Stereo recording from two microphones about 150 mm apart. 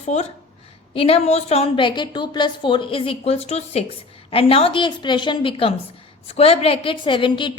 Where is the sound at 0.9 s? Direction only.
40° left (ahead or behind).